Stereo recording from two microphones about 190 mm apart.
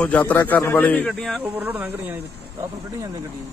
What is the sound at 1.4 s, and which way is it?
Speech, 10° right (ahead or behind).